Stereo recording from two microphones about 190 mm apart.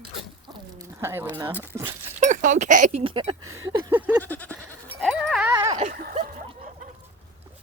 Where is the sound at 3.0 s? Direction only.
25° right (ahead or behind).